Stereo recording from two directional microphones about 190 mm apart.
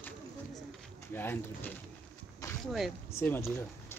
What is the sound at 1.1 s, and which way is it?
Speech, 10° left (ahead or behind).